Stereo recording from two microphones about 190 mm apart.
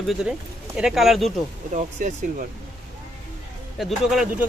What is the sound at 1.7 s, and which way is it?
Speech, 40° right (ahead or behind).